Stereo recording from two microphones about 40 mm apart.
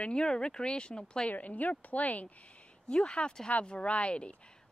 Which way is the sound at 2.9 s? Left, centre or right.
Left.